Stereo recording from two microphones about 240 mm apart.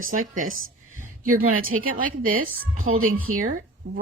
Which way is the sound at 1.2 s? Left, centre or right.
Right.